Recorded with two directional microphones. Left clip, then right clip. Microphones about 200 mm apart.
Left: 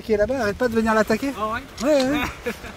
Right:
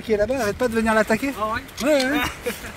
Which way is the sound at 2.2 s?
55° right (ahead or behind).